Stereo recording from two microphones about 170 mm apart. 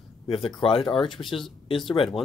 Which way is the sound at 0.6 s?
30° left (ahead or behind).